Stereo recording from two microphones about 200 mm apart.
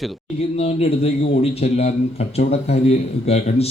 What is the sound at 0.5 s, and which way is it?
Speech, 30° left (ahead or behind).